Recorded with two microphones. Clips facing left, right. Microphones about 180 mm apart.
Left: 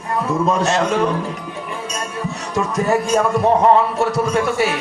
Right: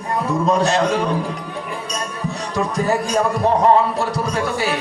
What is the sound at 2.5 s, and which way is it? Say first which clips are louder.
Speech: left 2 dB; 35° right (ahead or behind).